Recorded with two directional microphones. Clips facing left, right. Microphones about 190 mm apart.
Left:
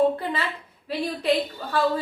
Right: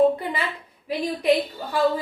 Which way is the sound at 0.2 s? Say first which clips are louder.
Even; 15° right (ahead or behind).